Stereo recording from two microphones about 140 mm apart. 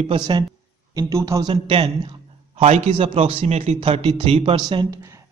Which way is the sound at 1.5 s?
40° right (ahead or behind).